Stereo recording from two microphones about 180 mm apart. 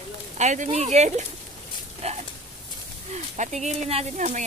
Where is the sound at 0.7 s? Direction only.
40° right (ahead or behind).